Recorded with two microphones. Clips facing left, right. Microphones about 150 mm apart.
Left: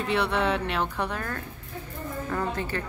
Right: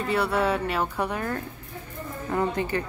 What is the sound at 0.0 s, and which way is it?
Speech, 5° right (ahead or behind).